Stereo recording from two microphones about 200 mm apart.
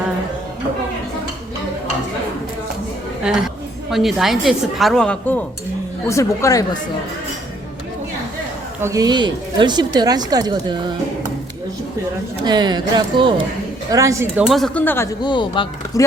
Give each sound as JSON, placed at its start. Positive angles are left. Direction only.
{"t": 3.2, "sound": "a woman's voice", "side_deg": 0}
{"t": 6.1, "sound": "speech", "side_deg": 15}
{"t": 8.8, "sound": "speech", "side_deg": -15}
{"t": 12.5, "sound": "speech", "side_deg": -20}